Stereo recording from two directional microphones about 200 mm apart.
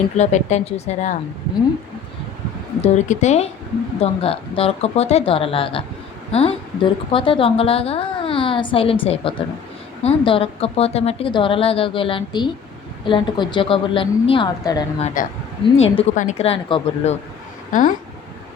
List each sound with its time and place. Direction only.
0.2 s a woman's voice: 35° left (ahead or behind)
2.8 s a woman's voice: 35° left (ahead or behind); by 14.8 s 20° left (ahead or behind)
15.0 s a woman's voice: 40° left (ahead or behind)
17.7 s speech: 40° left (ahead or behind)